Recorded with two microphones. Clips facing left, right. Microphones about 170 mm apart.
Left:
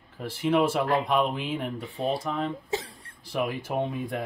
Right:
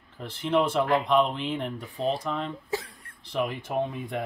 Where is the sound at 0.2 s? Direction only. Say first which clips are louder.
Left 1 dB; 10° left (ahead or behind).